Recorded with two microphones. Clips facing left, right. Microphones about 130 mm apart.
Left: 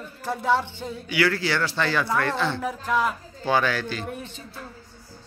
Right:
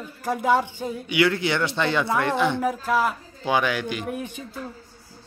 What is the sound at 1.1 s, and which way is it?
Speech, 20° right (ahead or behind).